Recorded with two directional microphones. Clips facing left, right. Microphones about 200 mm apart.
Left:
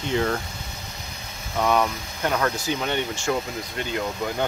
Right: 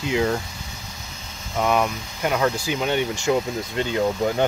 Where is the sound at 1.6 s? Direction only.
10° right (ahead or behind).